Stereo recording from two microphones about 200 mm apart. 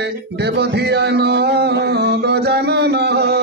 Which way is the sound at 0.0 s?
55° right (ahead or behind).